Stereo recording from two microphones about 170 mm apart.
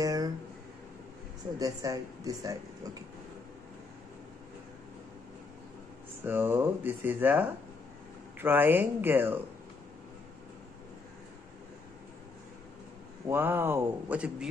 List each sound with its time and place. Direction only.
0.0 s a sound: 20° right (ahead or behind)
1.6 s speech: 20° right (ahead or behind)
6.2 s speech: 10° right (ahead or behind)
13.3 s speech: 10° right (ahead or behind)